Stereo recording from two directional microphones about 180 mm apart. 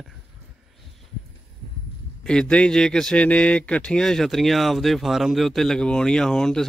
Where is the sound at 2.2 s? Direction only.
5° left (ahead or behind).